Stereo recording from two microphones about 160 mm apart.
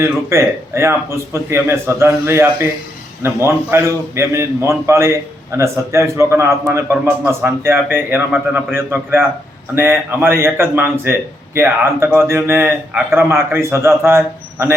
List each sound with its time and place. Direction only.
0.0 s a man's voice: 15° right (ahead or behind)